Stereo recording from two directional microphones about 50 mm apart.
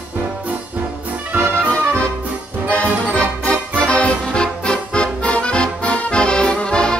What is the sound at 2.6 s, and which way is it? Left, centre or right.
Music, left.